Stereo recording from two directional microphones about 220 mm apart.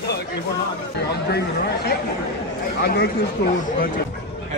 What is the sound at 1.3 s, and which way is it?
Speech, 45° left (ahead or behind).